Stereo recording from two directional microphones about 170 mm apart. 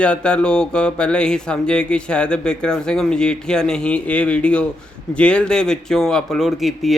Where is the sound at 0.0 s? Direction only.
5° left (ahead or behind).